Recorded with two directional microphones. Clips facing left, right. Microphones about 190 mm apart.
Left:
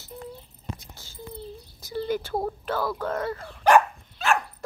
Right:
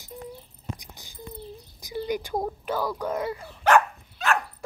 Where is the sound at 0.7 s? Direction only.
15° right (ahead or behind).